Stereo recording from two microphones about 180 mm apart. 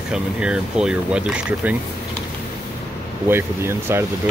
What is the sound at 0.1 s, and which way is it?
Speech, 5° right (ahead or behind).